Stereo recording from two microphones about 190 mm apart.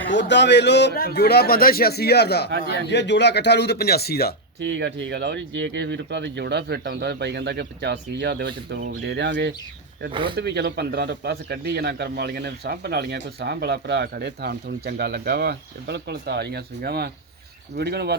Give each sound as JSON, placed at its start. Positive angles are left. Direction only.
{"t": 0.1, "sound": "a man's voice", "side_deg": 70}
{"t": 4.6, "sound": "a man's voice", "side_deg": -65}
{"t": 10.1, "sound": "speech", "side_deg": -25}
{"t": 10.3, "sound": "a man's voice", "side_deg": -60}